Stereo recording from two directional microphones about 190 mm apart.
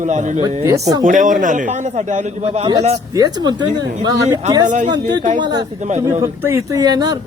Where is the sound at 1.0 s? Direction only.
40° right (ahead or behind).